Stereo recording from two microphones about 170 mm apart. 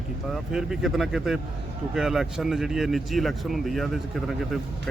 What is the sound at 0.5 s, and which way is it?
Speech, 5° right (ahead or behind).